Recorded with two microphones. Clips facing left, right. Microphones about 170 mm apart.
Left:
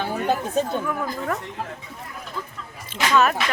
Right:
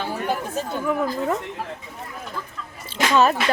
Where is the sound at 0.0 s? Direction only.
20° left (ahead or behind).